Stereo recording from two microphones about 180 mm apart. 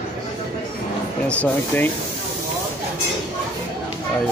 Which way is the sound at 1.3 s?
10° left (ahead or behind).